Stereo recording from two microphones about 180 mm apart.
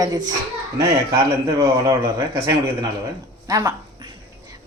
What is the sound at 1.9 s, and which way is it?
Speech, 20° right (ahead or behind).